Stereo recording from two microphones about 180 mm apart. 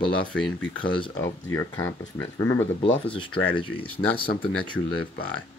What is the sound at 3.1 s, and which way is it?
Speech, 30° left (ahead or behind).